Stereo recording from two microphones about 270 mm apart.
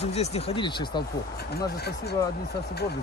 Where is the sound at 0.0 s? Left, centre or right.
Left.